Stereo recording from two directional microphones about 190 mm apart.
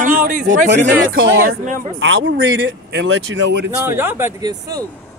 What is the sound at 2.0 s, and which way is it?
Speech, 90° right.